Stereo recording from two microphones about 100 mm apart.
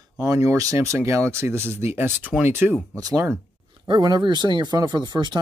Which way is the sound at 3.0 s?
35° right (ahead or behind).